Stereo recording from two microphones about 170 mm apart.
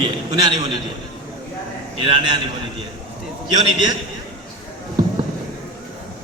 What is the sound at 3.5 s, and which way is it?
Speech, 25° right (ahead or behind).